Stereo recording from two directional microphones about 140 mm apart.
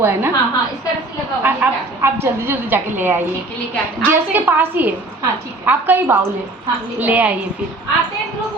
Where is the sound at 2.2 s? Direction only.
15° right (ahead or behind).